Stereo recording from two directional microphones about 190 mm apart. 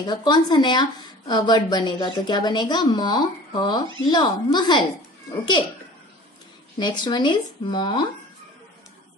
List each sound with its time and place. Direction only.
0.0 s a woman's voice: 25° left (ahead or behind)
6.8 s a woman's voice: 25° left (ahead or behind)